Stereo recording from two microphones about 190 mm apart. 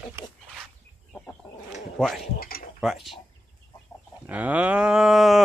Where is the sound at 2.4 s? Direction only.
50° left (ahead or behind).